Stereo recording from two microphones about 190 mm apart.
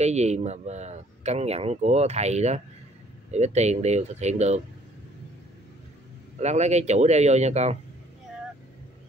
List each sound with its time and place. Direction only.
0.0 s a man's voice: 35° right (ahead or behind)
6.4 s a man's voice: 35° right (ahead or behind)